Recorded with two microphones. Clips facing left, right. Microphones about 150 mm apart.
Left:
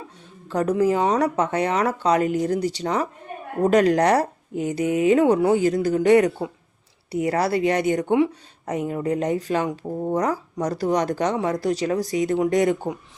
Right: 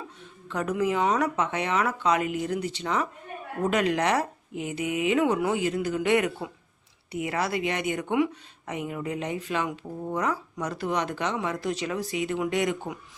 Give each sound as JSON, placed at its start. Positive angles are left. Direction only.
{"t": 0.4, "sound": "a woman's voice", "side_deg": 35}